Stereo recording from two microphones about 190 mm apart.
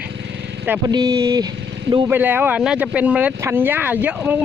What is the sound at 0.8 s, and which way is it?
Speech, 20° right (ahead or behind).